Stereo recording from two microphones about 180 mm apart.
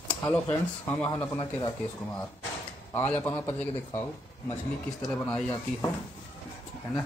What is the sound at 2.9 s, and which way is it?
Speech, 10° left (ahead or behind).